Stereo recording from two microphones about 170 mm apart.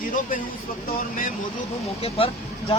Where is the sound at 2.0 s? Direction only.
35° left (ahead or behind).